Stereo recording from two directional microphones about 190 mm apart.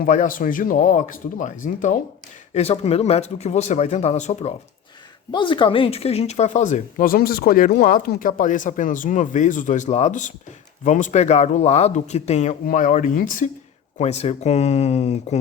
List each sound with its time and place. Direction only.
0.0 s speech: 45° left (ahead or behind)
5.3 s speech: 25° left (ahead or behind)